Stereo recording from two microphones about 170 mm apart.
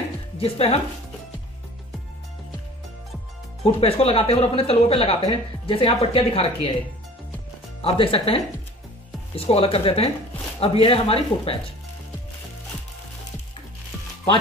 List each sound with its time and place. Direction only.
0.4 s speech: 35° left (ahead or behind)
3.6 s speech: 35° left (ahead or behind)
7.8 s speech: 35° left (ahead or behind)